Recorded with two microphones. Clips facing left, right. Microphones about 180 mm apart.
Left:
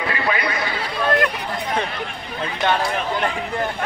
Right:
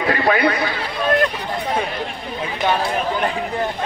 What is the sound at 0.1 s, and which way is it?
Speech, 55° right (ahead or behind).